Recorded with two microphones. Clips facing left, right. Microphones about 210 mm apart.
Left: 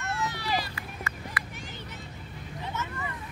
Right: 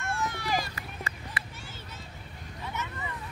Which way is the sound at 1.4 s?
25° right (ahead or behind).